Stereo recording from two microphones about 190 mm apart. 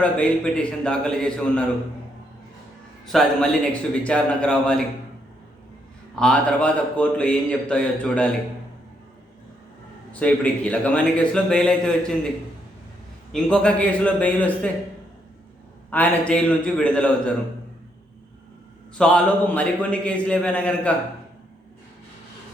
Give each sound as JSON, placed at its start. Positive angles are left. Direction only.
{"t": 0.0, "sound": "a man's voice", "side_deg": 5}
{"t": 3.1, "sound": "a man's voice", "side_deg": 0}
{"t": 6.1, "sound": "a man's voice", "side_deg": 5}
{"t": 10.1, "sound": "a man's voice", "side_deg": 5}
{"t": 13.3, "sound": "a man's voice", "side_deg": 5}
{"t": 15.9, "sound": "a man's voice", "side_deg": 5}
{"t": 18.9, "sound": "a man's voice", "side_deg": 5}